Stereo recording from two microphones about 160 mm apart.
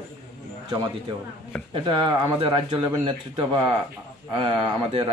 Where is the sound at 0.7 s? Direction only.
25° right (ahead or behind).